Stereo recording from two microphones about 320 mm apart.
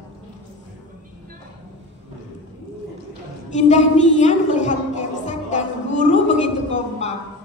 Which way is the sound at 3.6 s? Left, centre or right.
Left.